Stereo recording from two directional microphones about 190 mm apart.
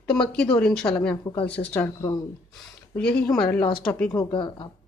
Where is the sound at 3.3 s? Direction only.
5° left (ahead or behind).